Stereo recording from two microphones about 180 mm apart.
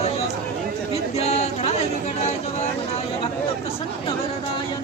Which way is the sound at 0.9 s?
35° left (ahead or behind).